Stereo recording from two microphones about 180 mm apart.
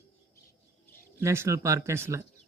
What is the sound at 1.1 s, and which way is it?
Speech, 15° right (ahead or behind).